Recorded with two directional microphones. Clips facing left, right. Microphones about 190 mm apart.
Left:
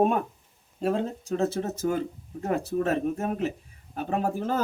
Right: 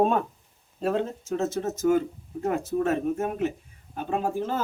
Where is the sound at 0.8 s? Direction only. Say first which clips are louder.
Even; 35° left (ahead or behind).